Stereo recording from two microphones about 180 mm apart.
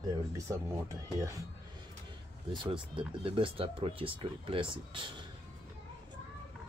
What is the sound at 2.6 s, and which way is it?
Speech, 30° right (ahead or behind).